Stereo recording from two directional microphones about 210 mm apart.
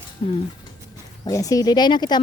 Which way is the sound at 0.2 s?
25° left (ahead or behind).